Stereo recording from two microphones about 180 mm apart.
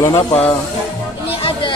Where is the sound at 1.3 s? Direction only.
30° left (ahead or behind).